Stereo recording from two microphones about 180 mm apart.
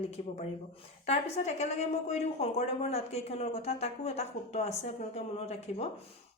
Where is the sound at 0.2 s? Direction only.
40° left (ahead or behind).